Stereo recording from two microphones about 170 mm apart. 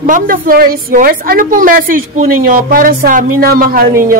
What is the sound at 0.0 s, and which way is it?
A woman's voice, 55° right (ahead or behind).